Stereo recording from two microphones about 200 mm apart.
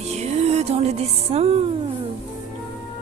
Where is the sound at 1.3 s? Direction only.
30° right (ahead or behind).